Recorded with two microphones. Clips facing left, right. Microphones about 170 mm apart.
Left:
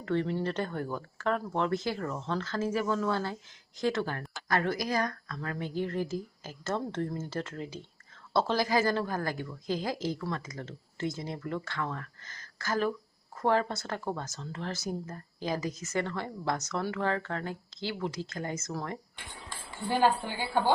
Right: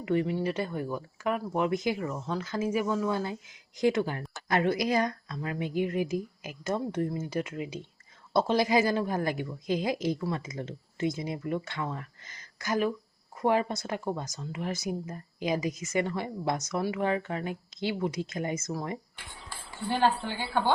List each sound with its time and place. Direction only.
0.0 s a woman's voice: 15° right (ahead or behind)